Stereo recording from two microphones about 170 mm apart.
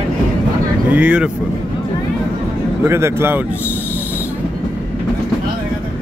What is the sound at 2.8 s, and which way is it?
Speech, 15° right (ahead or behind).